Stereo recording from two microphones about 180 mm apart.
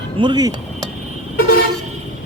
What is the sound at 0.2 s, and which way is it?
Speech, 25° right (ahead or behind).